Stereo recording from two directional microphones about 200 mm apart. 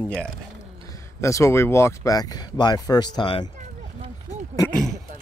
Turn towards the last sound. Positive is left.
turn(degrees=-20)  # may be behind; listen again after turning